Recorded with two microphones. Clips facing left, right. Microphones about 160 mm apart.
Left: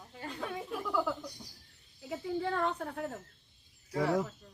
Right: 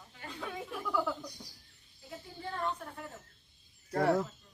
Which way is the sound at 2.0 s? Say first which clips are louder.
Left 10 dB; 75° left (ahead or behind).